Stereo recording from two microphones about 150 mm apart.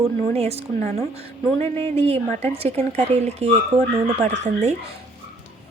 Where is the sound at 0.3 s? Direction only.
45° right (ahead or behind).